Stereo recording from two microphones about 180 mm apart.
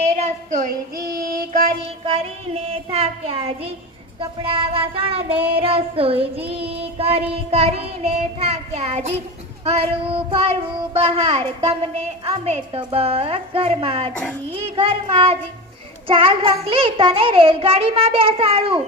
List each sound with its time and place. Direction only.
0.6 s child singing: 55° right (ahead or behind)
2.0 s child singing: 30° right (ahead or behind)